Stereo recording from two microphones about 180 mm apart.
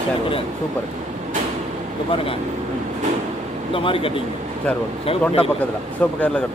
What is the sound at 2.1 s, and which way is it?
Speech, 30° left (ahead or behind).